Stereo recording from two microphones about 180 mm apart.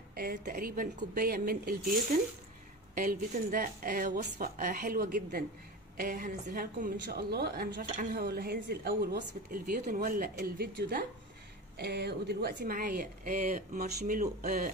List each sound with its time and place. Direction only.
0.1 s a woman's voice: 55° right (ahead or behind)
7.8 s a woman's voice: 35° right (ahead or behind)
8.1 s a woman's voice: 60° right (ahead or behind)